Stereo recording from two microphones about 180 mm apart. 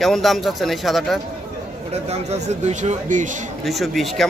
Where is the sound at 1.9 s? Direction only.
35° right (ahead or behind).